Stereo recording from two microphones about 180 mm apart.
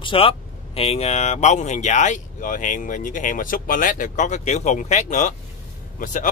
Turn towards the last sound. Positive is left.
turn(degrees=45)  # may be behind; listen again after turning